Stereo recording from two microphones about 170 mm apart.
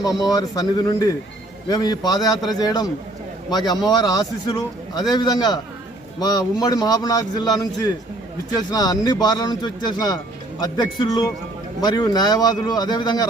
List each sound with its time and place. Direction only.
0.0 s a man's voice: 20° left (ahead or behind)